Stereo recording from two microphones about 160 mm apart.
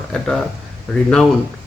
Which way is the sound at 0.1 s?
Centre (ahead or behind).